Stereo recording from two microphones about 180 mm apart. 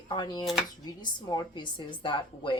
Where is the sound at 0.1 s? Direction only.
25° left (ahead or behind).